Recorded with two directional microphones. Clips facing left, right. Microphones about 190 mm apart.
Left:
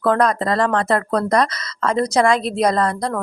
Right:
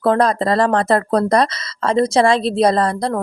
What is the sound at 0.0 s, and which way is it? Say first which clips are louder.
Speech: right 2 dB; 30° right (ahead or behind).